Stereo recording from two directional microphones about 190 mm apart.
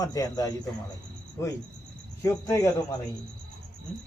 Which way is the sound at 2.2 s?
15° left (ahead or behind).